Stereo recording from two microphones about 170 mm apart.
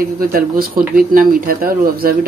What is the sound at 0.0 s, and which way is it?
Speech, 60° right (ahead or behind).